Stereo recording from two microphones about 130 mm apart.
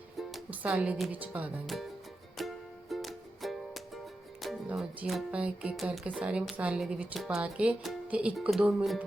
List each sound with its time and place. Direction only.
0.2 s music: centre (ahead or behind)
0.5 s speech: 10° right (ahead or behind)
1.7 s speech: centre (ahead or behind)
2.4 s music: centre (ahead or behind)
4.7 s speech: 5° right (ahead or behind)